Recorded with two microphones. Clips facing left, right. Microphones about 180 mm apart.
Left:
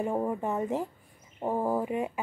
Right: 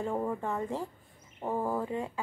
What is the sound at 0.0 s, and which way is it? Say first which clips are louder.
Speech: left 3 dB; 15° left (ahead or behind).